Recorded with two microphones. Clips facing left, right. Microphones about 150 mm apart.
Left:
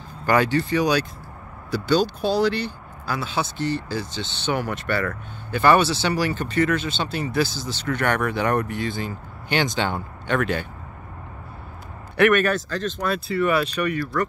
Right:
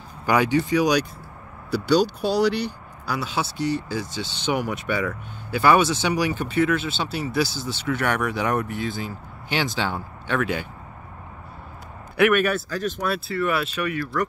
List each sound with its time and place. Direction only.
0.3 s speech: 10° right (ahead or behind)
12.2 s speech: 10° right (ahead or behind)